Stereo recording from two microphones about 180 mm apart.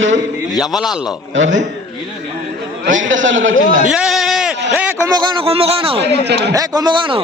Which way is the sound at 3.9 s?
5° right (ahead or behind).